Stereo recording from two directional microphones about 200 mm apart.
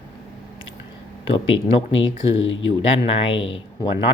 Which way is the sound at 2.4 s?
70° left (ahead or behind).